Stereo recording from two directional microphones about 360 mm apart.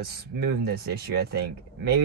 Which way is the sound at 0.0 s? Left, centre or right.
Right.